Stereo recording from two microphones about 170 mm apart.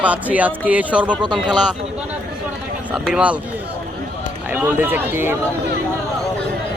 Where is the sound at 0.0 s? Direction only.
10° right (ahead or behind).